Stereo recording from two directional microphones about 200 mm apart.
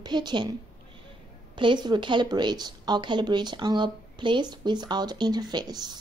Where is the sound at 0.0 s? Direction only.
20° right (ahead or behind).